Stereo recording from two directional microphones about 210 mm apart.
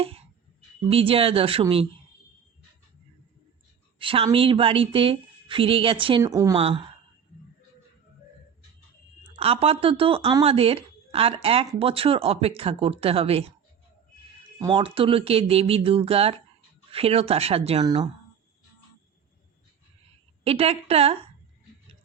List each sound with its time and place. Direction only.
0.0 s a sound: 30° right (ahead or behind)
0.9 s speech: 25° right (ahead or behind)
3.9 s speech: 25° right (ahead or behind)
6.6 s speech: 25° right (ahead or behind)
9.3 s speech: 30° right (ahead or behind)
14.6 s speech: 25° right (ahead or behind)
20.4 s speech: 30° right (ahead or behind)